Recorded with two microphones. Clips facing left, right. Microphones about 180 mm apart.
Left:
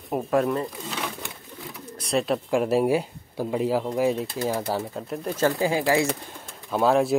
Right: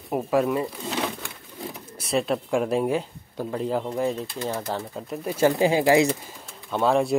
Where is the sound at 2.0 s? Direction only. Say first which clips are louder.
Even; centre (ahead or behind).